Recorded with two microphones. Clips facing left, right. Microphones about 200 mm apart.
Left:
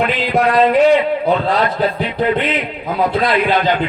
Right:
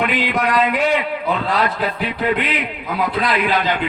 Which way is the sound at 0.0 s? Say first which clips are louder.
Left 4 dB; 35° left (ahead or behind).